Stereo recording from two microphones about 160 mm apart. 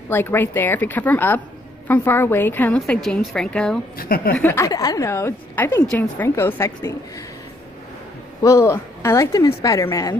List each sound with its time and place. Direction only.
0.1 s a woman's voice: 15° left (ahead or behind)
4.0 s a woman's voice: 65° left (ahead or behind)
4.4 s a woman's voice: 15° left (ahead or behind)
8.4 s a woman's voice: 20° left (ahead or behind)